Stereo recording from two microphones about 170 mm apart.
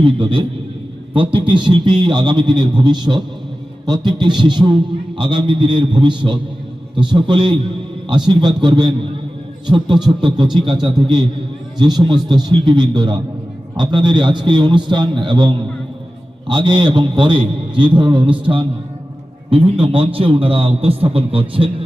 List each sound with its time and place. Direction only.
0.0 s a man's voice: 30° right (ahead or behind)